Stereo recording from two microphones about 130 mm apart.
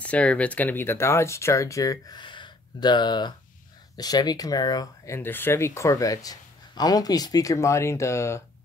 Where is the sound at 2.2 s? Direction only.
35° left (ahead or behind).